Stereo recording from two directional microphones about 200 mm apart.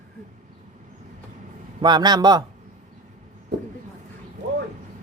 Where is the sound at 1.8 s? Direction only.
20° right (ahead or behind).